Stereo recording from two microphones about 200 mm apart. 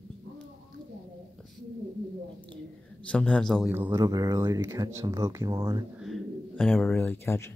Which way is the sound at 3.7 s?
15° right (ahead or behind).